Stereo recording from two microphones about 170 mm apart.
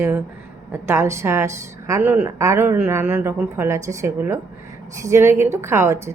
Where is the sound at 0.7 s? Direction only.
15° right (ahead or behind).